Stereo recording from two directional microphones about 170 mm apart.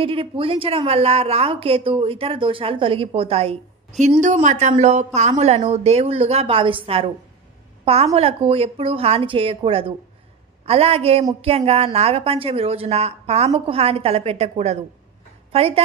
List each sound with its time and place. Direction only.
0.0 s a woman's voice: 30° right (ahead or behind)